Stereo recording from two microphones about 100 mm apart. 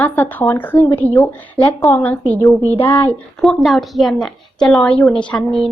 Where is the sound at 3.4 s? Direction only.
Centre (ahead or behind).